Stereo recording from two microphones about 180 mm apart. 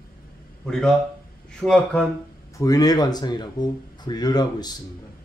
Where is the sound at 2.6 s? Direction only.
20° left (ahead or behind).